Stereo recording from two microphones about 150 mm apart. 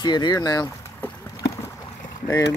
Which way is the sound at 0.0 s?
30° left (ahead or behind).